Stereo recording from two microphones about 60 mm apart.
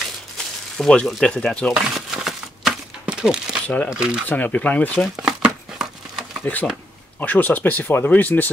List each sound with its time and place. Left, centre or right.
0.7 s speech: centre
1.7 s crumpling: centre
3.6 s speech: left
3.9 s speech: centre
4.3 s speech: left
4.9 s speech: centre
6.4 s speech: left